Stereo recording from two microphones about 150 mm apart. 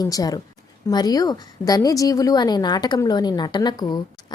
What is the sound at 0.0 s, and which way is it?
A woman's voice, 25° left (ahead or behind).